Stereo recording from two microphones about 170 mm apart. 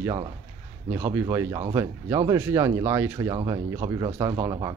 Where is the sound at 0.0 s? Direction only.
25° right (ahead or behind).